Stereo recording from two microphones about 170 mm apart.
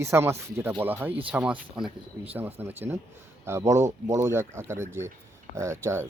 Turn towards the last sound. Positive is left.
turn(degrees=-15)  # may be behind; listen again after turning